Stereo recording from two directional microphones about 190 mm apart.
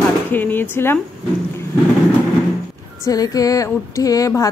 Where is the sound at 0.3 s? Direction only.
10° left (ahead or behind).